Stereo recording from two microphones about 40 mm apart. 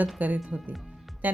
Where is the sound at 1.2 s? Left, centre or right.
Right.